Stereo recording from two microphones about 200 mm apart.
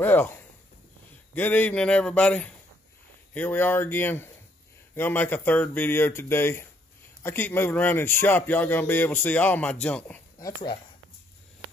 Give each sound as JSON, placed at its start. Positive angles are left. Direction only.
{"t": 0.0, "sound": "speech", "side_deg": 10}
{"t": 10.4, "sound": "speech", "side_deg": 20}